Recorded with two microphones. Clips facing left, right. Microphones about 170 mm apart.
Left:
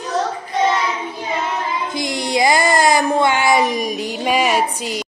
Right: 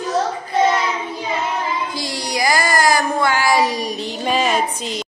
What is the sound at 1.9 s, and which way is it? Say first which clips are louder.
Child singing: left 4 dB; 20° left (ahead or behind).